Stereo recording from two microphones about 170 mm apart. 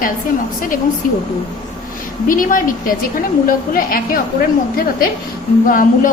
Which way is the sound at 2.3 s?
55° left (ahead or behind).